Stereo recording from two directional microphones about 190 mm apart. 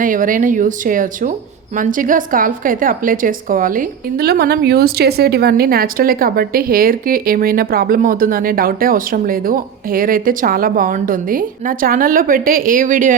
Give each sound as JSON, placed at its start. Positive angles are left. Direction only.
{"t": 0.0, "sound": "a woman's voice", "side_deg": -45}